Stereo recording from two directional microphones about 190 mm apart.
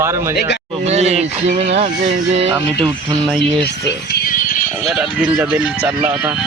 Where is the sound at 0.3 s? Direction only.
65° left (ahead or behind).